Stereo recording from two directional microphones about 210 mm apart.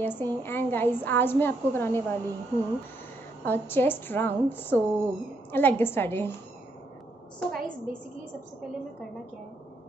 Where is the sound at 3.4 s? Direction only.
10° left (ahead or behind).